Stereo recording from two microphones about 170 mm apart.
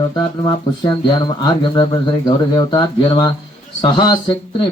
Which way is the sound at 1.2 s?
25° left (ahead or behind).